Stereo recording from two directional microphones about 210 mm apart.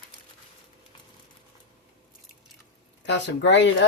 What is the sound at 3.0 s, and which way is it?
Speech, 55° left (ahead or behind).